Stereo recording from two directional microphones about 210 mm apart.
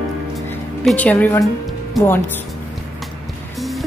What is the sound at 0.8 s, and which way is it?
Speech, 5° left (ahead or behind).